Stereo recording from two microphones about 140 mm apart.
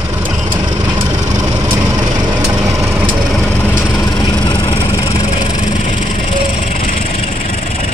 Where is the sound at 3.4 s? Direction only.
10° left (ahead or behind).